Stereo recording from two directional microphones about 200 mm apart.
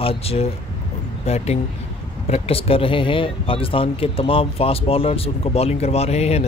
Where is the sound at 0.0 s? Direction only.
30° left (ahead or behind).